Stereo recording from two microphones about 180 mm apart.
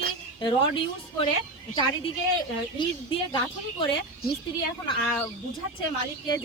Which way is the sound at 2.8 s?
30° left (ahead or behind).